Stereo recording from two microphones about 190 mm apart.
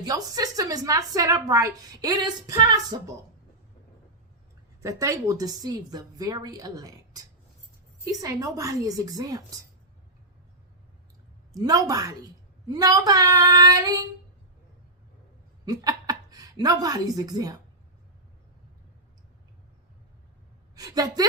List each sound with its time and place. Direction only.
0.0 s a woman's voice: 20° right (ahead or behind)
4.8 s a woman's voice: 15° right (ahead or behind)
11.5 s a woman's voice: 20° right (ahead or behind)
15.6 s speech: 20° right (ahead or behind)
20.7 s a woman's voice: 20° right (ahead or behind)